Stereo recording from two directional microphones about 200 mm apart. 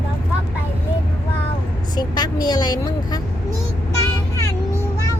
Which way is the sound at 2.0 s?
20° left (ahead or behind).